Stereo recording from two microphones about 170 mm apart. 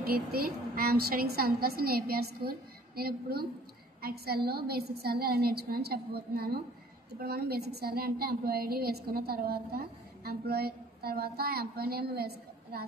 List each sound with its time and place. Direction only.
0.0 s a woman's voice: 60° right (ahead or behind)